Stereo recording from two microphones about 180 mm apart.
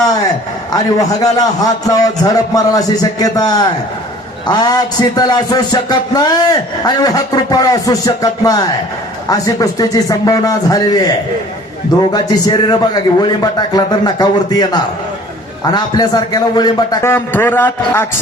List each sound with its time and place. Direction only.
0.7 s a man's voice: 20° left (ahead or behind)
12.1 s a man's voice: 25° left (ahead or behind)